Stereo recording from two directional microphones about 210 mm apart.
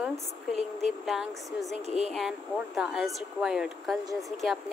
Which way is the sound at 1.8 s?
30° right (ahead or behind).